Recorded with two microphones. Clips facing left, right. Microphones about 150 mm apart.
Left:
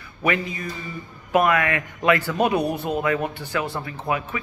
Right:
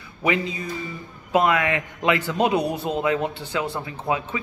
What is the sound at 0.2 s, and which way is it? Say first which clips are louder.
A man's voice: right 1 dB; 20° right (ahead or behind).